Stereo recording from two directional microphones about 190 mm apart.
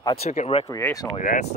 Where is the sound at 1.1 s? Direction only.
40° left (ahead or behind).